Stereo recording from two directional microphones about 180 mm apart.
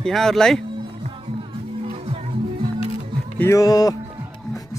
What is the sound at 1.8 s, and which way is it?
Music, 35° right (ahead or behind).